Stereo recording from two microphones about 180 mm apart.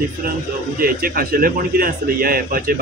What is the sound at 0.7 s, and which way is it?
A man's voice, 55° right (ahead or behind).